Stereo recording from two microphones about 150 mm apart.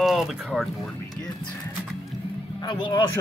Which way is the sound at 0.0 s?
Centre (ahead or behind).